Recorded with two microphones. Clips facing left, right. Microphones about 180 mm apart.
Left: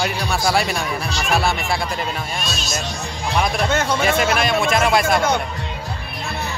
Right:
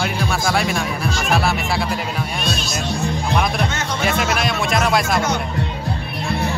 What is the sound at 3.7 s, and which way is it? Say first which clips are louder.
Music: left 6 dB; 55° left (ahead or behind).